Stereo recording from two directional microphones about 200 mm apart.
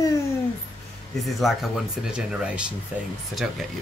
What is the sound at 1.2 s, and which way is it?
Speech, centre (ahead or behind).